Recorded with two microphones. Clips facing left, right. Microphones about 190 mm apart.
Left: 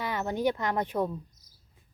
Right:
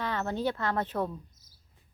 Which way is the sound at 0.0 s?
15° left (ahead or behind).